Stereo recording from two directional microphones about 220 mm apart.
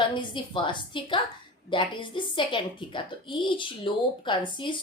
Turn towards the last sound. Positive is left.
turn(degrees=20)  # may be behind; listen again after turning